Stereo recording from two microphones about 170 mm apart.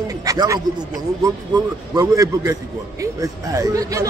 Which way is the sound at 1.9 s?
20° right (ahead or behind).